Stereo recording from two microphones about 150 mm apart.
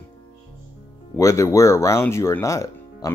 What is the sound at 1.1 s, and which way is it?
Speech, 20° left (ahead or behind).